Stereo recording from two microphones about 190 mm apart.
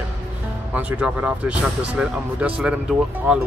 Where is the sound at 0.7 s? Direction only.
5° right (ahead or behind).